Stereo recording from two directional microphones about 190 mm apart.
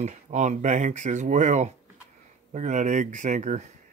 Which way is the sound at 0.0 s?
40° right (ahead or behind).